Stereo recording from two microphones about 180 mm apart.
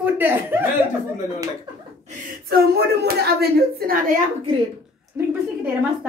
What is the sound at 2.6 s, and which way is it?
Speech, 60° right (ahead or behind).